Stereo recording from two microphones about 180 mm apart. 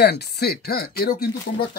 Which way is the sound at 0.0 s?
65° left (ahead or behind).